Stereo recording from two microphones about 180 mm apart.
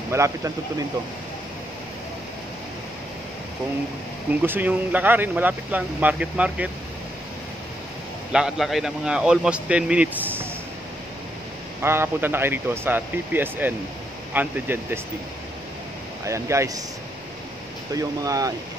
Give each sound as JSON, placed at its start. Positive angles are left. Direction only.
{"t": 0.1, "sound": "speech", "side_deg": -15}
{"t": 4.4, "sound": "speech", "side_deg": -10}
{"t": 8.3, "sound": "speech", "side_deg": -5}
{"t": 11.8, "sound": "speech", "side_deg": -15}
{"t": 16.3, "sound": "speech", "side_deg": -15}
{"t": 17.9, "sound": "speech", "side_deg": -20}